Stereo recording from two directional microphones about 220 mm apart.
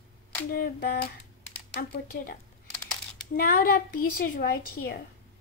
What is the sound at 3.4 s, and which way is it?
A woman's voice, 40° left (ahead or behind).